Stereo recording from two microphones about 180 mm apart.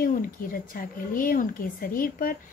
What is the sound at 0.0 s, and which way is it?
A woman's voice, 50° left (ahead or behind).